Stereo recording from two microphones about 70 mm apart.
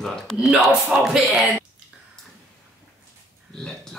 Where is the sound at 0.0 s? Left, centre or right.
Centre.